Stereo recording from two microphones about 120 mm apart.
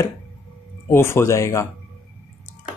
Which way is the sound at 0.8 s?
20° left (ahead or behind).